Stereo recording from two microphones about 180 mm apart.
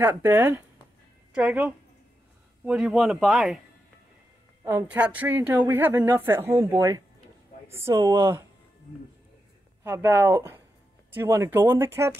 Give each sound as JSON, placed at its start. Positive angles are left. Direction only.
{"t": 0.0, "sound": "a woman's voice", "side_deg": -10}
{"t": 4.6, "sound": "a woman's voice", "side_deg": -10}
{"t": 9.8, "sound": "a woman's voice", "side_deg": -15}